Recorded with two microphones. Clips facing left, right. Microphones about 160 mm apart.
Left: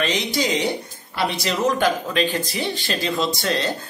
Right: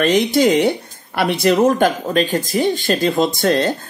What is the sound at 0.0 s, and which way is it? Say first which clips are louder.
Speech: right 9 dB; 50° right (ahead or behind).